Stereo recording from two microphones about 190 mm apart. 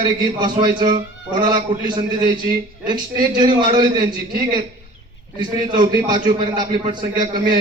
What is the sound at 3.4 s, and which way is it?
A man's voice, 25° right (ahead or behind).